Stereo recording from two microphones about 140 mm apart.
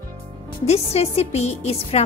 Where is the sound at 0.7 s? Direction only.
50° left (ahead or behind).